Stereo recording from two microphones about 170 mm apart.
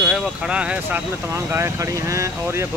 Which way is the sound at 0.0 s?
5° right (ahead or behind).